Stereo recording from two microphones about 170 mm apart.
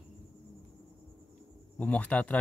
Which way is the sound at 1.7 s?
10° left (ahead or behind).